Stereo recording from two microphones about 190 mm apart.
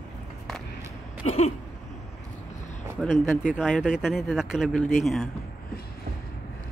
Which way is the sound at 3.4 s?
Centre (ahead or behind).